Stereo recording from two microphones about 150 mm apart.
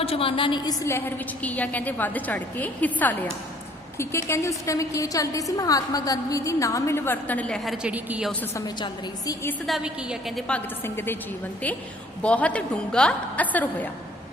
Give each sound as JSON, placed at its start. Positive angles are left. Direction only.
{"t": 0.0, "sound": "a woman's voice", "side_deg": 40}
{"t": 8.5, "sound": "a woman's voice", "side_deg": 25}
{"t": 9.6, "sound": "a woman's voice", "side_deg": -5}
{"t": 10.8, "sound": "a woman's voice", "side_deg": 15}
{"t": 12.2, "sound": "a woman's voice", "side_deg": 10}